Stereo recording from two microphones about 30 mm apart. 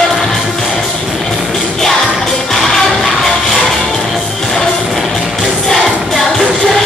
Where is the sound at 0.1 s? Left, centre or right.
Centre.